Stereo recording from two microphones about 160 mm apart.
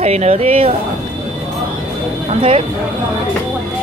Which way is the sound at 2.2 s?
35° right (ahead or behind).